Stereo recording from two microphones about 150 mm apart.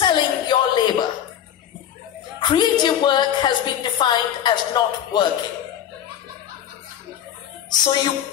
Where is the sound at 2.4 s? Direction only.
30° left (ahead or behind).